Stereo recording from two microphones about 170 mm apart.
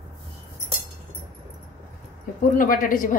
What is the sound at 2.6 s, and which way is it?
Speech, 55° left (ahead or behind).